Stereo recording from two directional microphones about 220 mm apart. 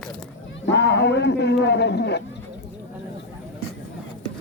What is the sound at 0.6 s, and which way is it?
A man's voice, 50° left (ahead or behind).